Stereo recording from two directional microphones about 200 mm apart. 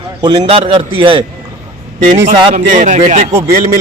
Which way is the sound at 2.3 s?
25° right (ahead or behind).